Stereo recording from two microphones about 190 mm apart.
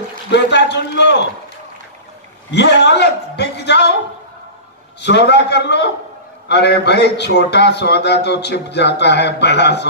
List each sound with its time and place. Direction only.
0.3 s a man's voice: 65° left (ahead or behind)
2.5 s a man's voice: 65° left (ahead or behind)
5.0 s a man's voice: 65° left (ahead or behind)